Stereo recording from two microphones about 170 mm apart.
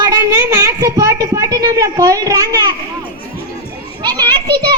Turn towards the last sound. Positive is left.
turn(degrees=-25)  # may be behind; listen again after turning